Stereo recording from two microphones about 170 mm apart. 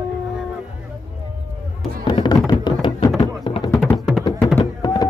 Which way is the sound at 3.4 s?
30° left (ahead or behind).